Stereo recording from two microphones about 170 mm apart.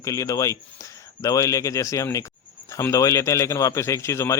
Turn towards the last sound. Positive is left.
turn(degrees=15)  # may be behind; listen again after turning